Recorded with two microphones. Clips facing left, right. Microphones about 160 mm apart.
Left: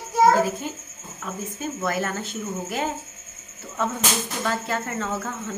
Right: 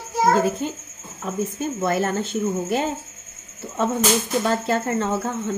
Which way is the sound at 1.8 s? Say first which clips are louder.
Right 4 dB; 25° right (ahead or behind).